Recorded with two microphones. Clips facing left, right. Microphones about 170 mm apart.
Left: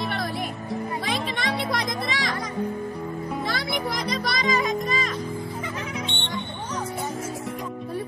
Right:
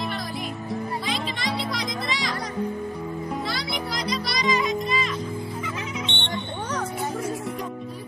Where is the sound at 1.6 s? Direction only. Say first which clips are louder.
Left 2 dB; 55° left (ahead or behind).